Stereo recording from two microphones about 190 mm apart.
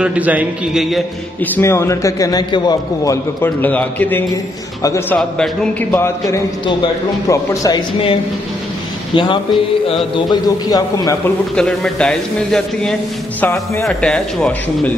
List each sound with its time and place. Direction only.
0.0 s a man's voice: 5° right (ahead or behind); by 3.2 s 20° left (ahead or behind)
3.4 s a man's voice: 10° left (ahead or behind)
11.5 s a man's voice: 5° left (ahead or behind)